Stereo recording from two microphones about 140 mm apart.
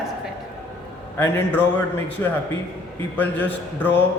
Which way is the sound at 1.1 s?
15° left (ahead or behind).